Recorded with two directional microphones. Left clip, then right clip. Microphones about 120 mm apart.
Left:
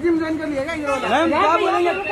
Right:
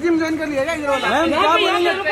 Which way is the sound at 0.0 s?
30° right (ahead or behind).